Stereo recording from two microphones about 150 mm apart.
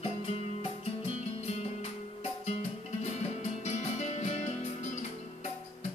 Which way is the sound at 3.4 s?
50° left (ahead or behind).